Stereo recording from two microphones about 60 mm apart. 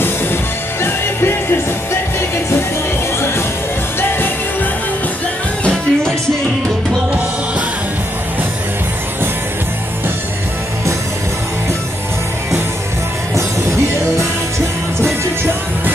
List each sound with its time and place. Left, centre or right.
0.8 s music: left
3.2 s music: left
5.6 s music: centre